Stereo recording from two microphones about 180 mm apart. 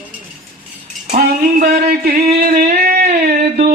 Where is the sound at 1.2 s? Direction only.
55° right (ahead or behind).